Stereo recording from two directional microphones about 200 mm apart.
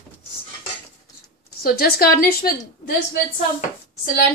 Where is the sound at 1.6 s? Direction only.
50° left (ahead or behind).